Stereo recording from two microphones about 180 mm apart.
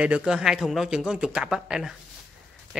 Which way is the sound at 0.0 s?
5° right (ahead or behind).